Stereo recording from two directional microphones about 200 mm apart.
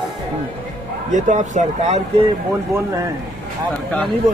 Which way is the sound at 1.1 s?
40° right (ahead or behind).